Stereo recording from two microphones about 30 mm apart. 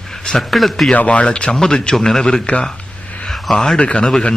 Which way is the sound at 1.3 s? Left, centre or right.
Left.